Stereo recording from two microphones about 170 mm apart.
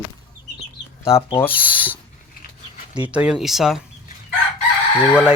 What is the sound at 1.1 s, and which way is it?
Speech, 15° left (ahead or behind).